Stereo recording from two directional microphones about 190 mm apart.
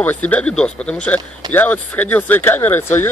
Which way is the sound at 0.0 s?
10° left (ahead or behind).